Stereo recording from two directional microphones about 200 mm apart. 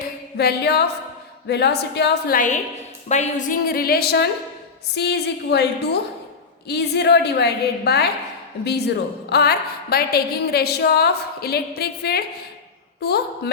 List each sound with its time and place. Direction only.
0.3 s a woman's voice: 55° left (ahead or behind)